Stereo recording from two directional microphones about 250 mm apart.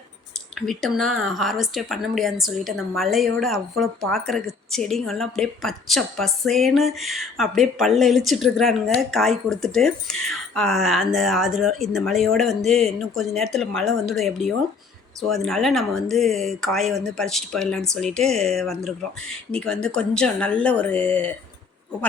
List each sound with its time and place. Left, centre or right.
0.5 s a woman's voice: centre